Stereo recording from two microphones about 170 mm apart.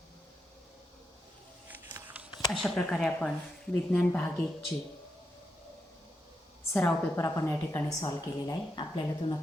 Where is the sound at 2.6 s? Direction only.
5° left (ahead or behind).